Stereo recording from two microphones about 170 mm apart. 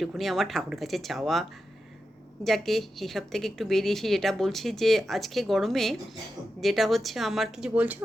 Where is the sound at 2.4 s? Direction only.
Centre (ahead or behind).